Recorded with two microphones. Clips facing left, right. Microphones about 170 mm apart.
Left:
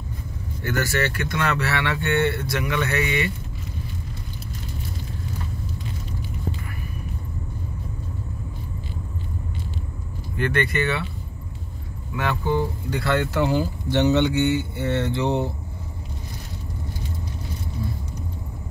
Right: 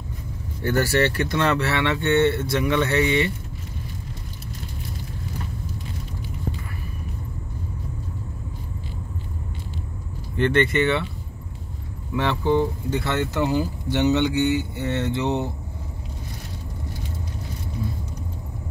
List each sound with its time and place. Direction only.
0.6 s speech: 35° right (ahead or behind)
10.3 s speech: 25° right (ahead or behind)
12.2 s speech: 25° right (ahead or behind)